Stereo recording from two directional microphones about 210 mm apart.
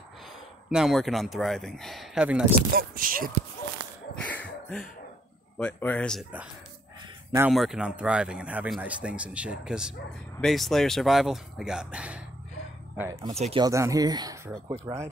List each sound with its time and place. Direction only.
0.7 s speech: centre (ahead or behind)
2.7 s speech: 45° right (ahead or behind)
4.2 s cough: 5° left (ahead or behind)
5.6 s speech: 5° left (ahead or behind)
7.3 s speech: 5° right (ahead or behind)
13.3 s speech: 30° right (ahead or behind)
13.7 s speech: 15° right (ahead or behind)